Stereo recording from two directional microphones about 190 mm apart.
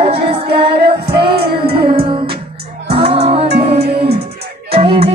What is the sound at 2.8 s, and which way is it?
Music, 30° right (ahead or behind).